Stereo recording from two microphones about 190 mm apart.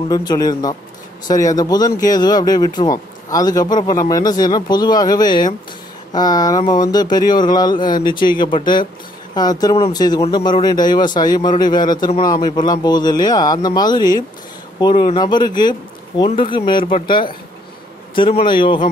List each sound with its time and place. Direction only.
0.1 s a man's voice: 20° left (ahead or behind)